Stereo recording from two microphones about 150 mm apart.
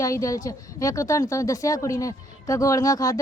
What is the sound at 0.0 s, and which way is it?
Speech, 20° left (ahead or behind).